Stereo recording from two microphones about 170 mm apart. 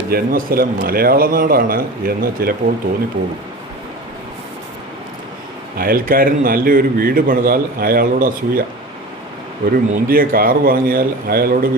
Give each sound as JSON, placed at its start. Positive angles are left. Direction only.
{"t": 0.1, "sound": "speech", "side_deg": -60}
{"t": 5.7, "sound": "speech", "side_deg": -60}
{"t": 9.9, "sound": "speech", "side_deg": -60}